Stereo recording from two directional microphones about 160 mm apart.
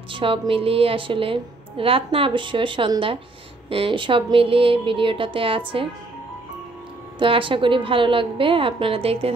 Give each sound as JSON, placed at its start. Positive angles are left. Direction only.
{"t": 0.1, "sound": "a woman's voice", "side_deg": -35}
{"t": 7.2, "sound": "a woman's voice", "side_deg": -30}